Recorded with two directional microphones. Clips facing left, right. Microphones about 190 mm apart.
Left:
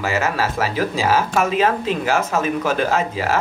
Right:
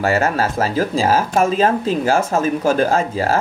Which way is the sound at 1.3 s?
35° right (ahead or behind).